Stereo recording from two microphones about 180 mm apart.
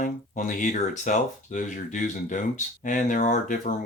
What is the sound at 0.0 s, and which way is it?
Speech, 45° left (ahead or behind).